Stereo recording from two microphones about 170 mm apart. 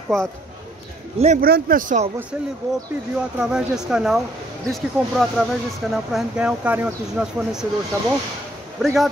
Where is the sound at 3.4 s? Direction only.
5° right (ahead or behind).